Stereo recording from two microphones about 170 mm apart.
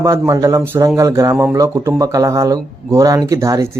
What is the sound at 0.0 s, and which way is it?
Speech, 20° right (ahead or behind).